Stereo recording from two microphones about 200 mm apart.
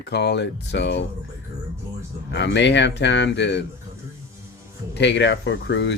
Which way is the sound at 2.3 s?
60° left (ahead or behind).